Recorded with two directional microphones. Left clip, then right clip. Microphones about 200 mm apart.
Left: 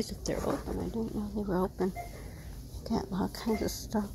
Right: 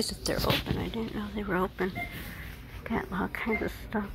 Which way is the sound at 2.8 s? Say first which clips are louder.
Right 2 dB; centre (ahead or behind).